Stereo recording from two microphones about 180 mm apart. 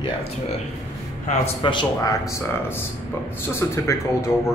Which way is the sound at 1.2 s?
30° left (ahead or behind).